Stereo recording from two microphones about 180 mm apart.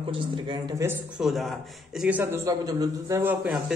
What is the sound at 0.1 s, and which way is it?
Speech, 25° right (ahead or behind).